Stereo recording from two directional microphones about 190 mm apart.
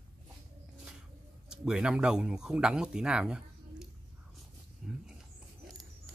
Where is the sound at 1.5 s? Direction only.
5° right (ahead or behind).